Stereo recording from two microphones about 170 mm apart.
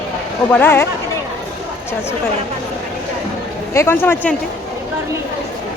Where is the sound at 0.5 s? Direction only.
10° left (ahead or behind).